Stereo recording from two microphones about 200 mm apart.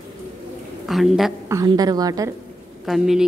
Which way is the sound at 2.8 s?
Centre (ahead or behind).